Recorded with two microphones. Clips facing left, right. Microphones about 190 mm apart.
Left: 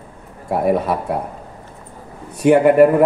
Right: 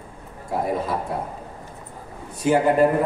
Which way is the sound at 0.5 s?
65° left (ahead or behind).